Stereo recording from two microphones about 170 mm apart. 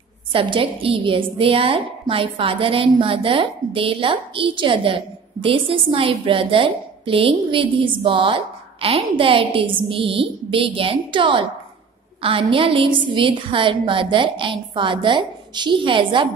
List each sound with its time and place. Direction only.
0.3 s a woman's voice: 30° right (ahead or behind)